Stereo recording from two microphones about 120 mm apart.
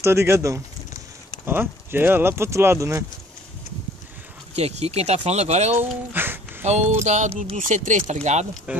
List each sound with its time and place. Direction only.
0.0 s speech: 20° right (ahead or behind)
4.6 s speech: 60° right (ahead or behind)
5.8 s speech: 15° right (ahead or behind)
6.6 s music: 65° right (ahead or behind)
7.5 s speech: 90° right
8.1 s music: 75° right (ahead or behind)
8.7 s speech: 10° right (ahead or behind)